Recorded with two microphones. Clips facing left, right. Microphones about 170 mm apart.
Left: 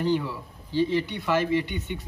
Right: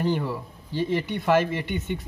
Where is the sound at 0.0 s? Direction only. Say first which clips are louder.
Even; 50° right (ahead or behind).